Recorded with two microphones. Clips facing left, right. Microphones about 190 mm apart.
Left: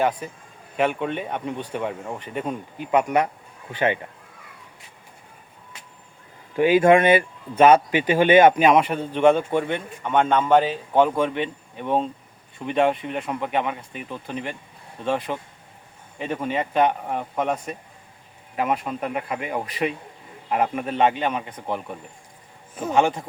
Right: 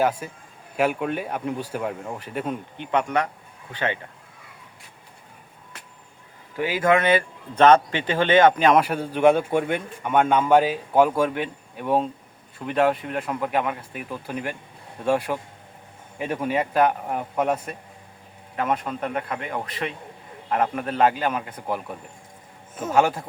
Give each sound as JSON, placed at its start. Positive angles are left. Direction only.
{"t": 0.0, "sound": "speech", "side_deg": -5}
{"t": 6.6, "sound": "speech", "side_deg": 20}
{"t": 8.7, "sound": "a man's voice", "side_deg": -5}
{"t": 18.5, "sound": "speech", "side_deg": 5}